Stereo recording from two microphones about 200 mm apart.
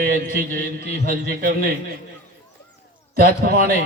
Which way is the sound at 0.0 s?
45° right (ahead or behind).